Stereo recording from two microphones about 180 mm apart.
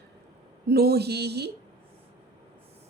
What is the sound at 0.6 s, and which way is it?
Speech, 60° right (ahead or behind).